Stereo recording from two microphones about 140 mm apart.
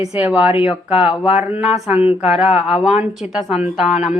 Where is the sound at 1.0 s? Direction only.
45° left (ahead or behind).